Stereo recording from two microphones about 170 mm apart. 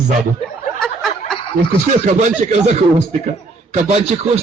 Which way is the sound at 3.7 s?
40° right (ahead or behind).